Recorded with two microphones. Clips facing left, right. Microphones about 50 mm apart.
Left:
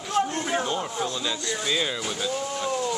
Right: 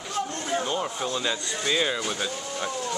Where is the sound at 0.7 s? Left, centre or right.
Centre.